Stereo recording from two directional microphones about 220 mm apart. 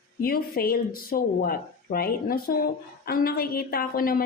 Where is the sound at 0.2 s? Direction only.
45° left (ahead or behind).